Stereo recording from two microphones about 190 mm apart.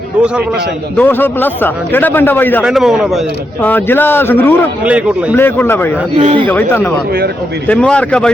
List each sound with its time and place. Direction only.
0.9 s a man's voice: 10° left (ahead or behind)
2.6 s a man's voice: centre (ahead or behind)
4.8 s a man's voice: 5° right (ahead or behind)
5.4 s a man's voice: 10° left (ahead or behind)
6.1 s speech: 25° right (ahead or behind)
6.5 s a man's voice: 10° left (ahead or behind)